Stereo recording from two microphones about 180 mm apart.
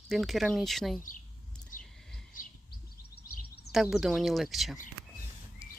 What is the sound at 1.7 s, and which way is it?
Bird, 50° left (ahead or behind).